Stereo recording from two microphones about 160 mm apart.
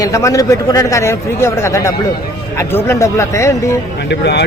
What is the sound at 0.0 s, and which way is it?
Speech, 20° left (ahead or behind).